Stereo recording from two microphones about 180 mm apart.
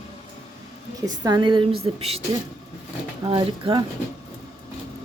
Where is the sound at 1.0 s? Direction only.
20° right (ahead or behind).